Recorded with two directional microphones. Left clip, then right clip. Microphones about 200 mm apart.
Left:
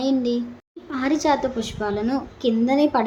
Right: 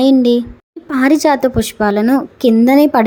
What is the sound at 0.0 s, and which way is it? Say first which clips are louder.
A woman's voice: right 11 dB; 40° right (ahead or behind).